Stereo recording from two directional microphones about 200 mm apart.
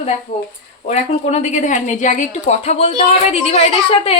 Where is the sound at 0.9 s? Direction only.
35° left (ahead or behind).